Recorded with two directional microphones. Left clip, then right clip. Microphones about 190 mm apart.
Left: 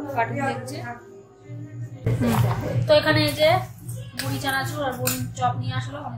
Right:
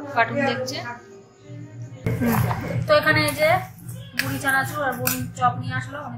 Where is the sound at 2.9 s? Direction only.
10° left (ahead or behind).